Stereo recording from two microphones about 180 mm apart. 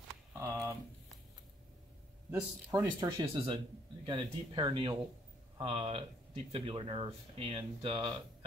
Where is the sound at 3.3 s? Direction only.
30° right (ahead or behind).